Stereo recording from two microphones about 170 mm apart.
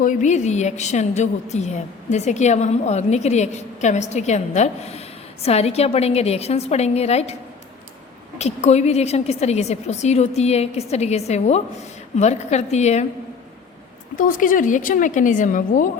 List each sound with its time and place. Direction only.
0.0 s a woman's voice: 50° left (ahead or behind)
8.4 s a woman's voice: 40° left (ahead or behind)
14.2 s a woman's voice: 50° left (ahead or behind)